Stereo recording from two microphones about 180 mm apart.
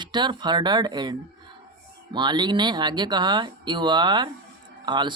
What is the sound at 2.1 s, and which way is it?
Speech, 25° right (ahead or behind).